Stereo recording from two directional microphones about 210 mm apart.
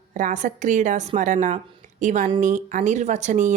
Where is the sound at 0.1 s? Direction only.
35° right (ahead or behind).